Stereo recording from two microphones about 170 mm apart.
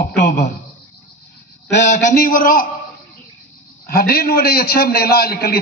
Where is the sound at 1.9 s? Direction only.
50° left (ahead or behind).